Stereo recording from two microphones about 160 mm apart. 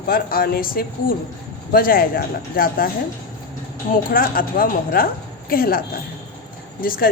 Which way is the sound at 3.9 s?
60° left (ahead or behind).